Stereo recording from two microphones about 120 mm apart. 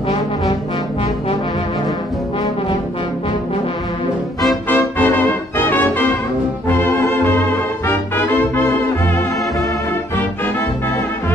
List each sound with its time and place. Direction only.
4.6 s music: 15° left (ahead or behind)
5.7 s brass instrument: 15° left (ahead or behind)
6.7 s music: 20° left (ahead or behind)